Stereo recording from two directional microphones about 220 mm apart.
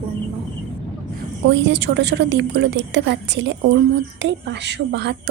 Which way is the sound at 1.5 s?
50° right (ahead or behind).